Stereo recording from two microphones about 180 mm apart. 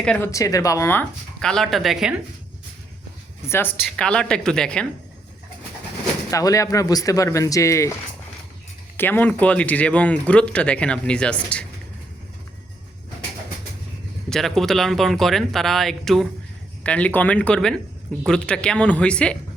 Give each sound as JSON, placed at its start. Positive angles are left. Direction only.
{"t": 0.0, "sound": "speech", "side_deg": 5}
{"t": 0.3, "sound": "speech", "side_deg": 20}
{"t": 3.4, "sound": "speech", "side_deg": 15}
{"t": 6.3, "sound": "speech", "side_deg": 20}
{"t": 9.0, "sound": "speech", "side_deg": 10}
{"t": 14.3, "sound": "speech", "side_deg": 0}